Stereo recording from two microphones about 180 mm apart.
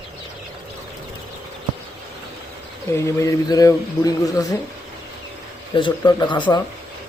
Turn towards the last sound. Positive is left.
turn(degrees=25)  # may be behind; listen again after turning